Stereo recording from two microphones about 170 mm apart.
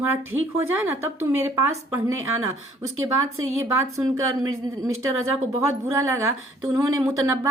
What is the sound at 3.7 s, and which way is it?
Speech, 20° right (ahead or behind).